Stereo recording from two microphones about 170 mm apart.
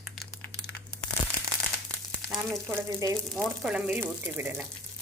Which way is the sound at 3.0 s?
20° right (ahead or behind).